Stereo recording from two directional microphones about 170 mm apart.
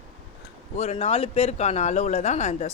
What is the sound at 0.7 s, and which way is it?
Speech, 40° left (ahead or behind).